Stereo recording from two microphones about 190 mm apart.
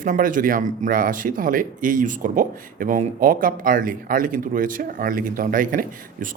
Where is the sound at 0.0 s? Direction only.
45° right (ahead or behind).